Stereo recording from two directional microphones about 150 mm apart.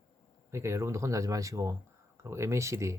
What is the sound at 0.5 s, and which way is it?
Speech, 20° right (ahead or behind).